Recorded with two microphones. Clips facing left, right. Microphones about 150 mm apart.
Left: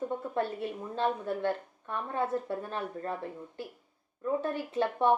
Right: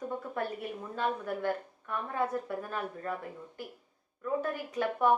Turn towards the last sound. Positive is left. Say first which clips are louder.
# left 1 dB
turn(degrees=25)  # may be behind; listen again after turning